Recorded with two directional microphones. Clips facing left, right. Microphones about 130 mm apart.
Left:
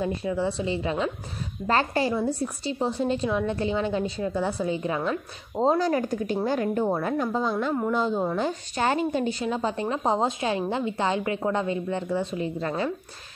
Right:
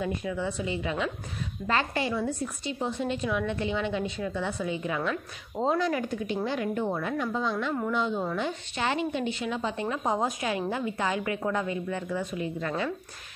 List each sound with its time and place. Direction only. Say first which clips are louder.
0.0 s a woman's voice: left 4 dB; 30° left (ahead or behind)